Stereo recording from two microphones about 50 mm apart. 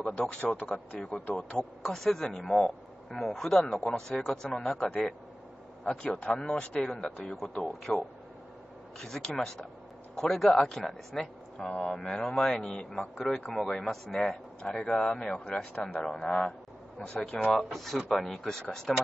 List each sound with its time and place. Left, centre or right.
0.0 s a man's voice: left
1.8 s speech: centre
4.3 s a man's voice: centre
11.5 s a man's voice: centre
12.1 s speech: centre
15.3 s a man's voice: left
16.0 s a man's voice: centre
17.6 s speech: centre